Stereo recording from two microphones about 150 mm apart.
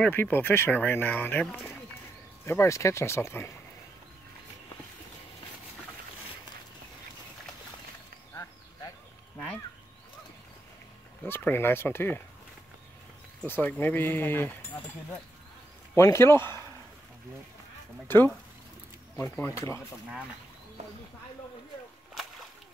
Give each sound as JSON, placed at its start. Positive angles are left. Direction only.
{"t": 0.0, "sound": "speech", "side_deg": 15}
{"t": 11.2, "sound": "speech", "side_deg": 15}
{"t": 13.4, "sound": "speech", "side_deg": 10}
{"t": 15.9, "sound": "speech", "side_deg": 20}
{"t": 18.0, "sound": "speech", "side_deg": 15}